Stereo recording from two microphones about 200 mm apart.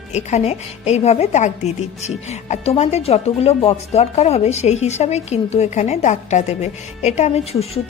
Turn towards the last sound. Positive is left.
turn(degrees=30)  # may be behind; listen again after turning